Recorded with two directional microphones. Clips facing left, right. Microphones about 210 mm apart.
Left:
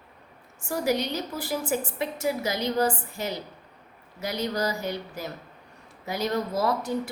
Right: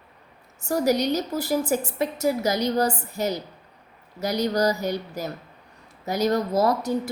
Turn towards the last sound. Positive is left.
turn(degrees=-40)  # may be behind; listen again after turning